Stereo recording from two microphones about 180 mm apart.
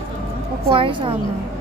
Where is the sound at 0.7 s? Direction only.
30° right (ahead or behind).